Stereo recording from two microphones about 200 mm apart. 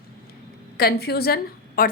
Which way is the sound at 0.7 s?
50° left (ahead or behind).